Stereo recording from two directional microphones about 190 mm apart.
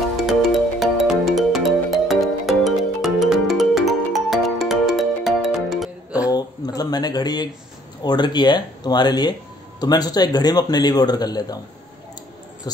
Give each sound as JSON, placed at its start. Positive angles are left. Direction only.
{"t": 0.3, "sound": "music", "side_deg": 0}
{"t": 6.3, "sound": "a sound", "side_deg": 20}
{"t": 8.0, "sound": "speech", "side_deg": 20}
{"t": 12.7, "sound": "speech", "side_deg": 20}